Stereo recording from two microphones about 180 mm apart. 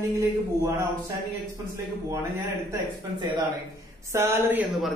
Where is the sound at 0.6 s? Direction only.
15° right (ahead or behind).